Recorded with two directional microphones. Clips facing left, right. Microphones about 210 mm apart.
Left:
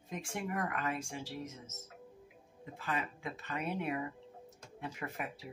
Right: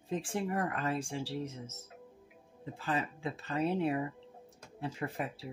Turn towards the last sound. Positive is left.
turn(degrees=-30)  # may be behind; listen again after turning